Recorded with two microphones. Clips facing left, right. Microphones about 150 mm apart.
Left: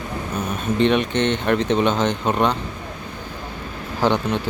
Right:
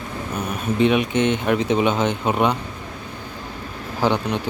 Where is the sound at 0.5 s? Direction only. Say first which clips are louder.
Even; 5° right (ahead or behind).